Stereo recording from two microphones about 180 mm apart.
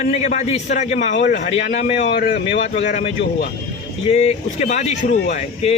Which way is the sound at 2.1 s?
60° left (ahead or behind).